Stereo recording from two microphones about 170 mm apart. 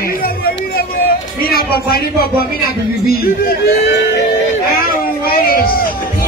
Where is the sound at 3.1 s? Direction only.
65° left (ahead or behind).